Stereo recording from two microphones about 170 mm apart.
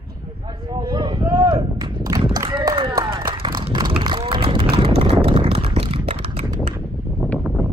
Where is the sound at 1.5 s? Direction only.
30° right (ahead or behind).